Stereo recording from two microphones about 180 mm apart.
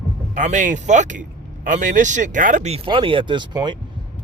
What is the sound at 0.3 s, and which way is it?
Speech, 45° right (ahead or behind).